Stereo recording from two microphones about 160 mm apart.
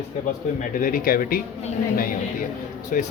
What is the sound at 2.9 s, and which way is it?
Speech, 55° left (ahead or behind).